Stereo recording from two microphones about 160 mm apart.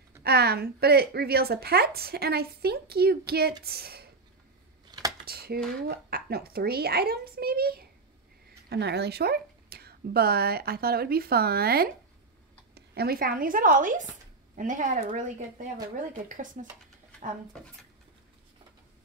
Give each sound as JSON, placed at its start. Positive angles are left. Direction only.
{"t": 0.2, "sound": "a woman's voice", "side_deg": -80}
{"t": 5.2, "sound": "dishes", "side_deg": -75}
{"t": 5.9, "sound": "a child's voice", "side_deg": -75}
{"t": 8.6, "sound": "speech", "side_deg": -90}